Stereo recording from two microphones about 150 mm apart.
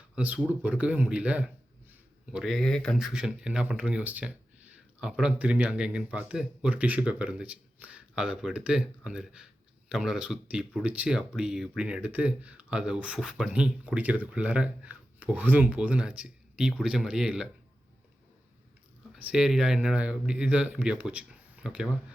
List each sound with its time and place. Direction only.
0.2 s speech: 10° right (ahead or behind)
19.1 s speech: 5° right (ahead or behind)